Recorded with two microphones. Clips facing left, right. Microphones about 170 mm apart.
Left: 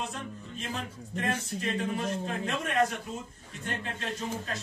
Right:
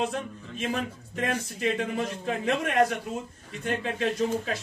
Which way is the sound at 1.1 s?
70° right (ahead or behind).